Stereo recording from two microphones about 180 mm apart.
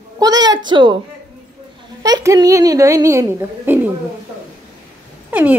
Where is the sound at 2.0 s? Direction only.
20° right (ahead or behind).